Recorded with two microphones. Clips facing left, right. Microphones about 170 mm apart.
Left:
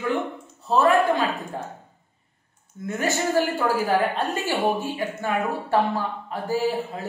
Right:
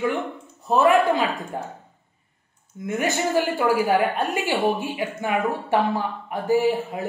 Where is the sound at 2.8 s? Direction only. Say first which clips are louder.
Right 1 dB; 15° right (ahead or behind).